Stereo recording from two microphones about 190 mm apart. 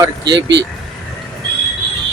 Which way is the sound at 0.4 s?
65° right (ahead or behind).